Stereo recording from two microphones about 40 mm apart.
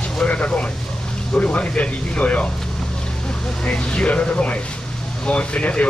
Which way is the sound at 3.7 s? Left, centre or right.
Left.